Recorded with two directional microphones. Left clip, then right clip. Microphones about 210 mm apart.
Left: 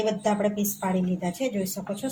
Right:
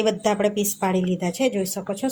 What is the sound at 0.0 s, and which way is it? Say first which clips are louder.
A woman's voice: right 4 dB; 35° right (ahead or behind).